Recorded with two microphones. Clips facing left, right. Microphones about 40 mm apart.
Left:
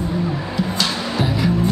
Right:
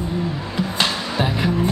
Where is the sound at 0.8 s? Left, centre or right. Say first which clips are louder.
Right 3 dB; right.